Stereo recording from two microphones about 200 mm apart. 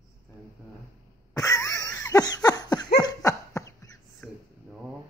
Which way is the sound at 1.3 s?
20° left (ahead or behind).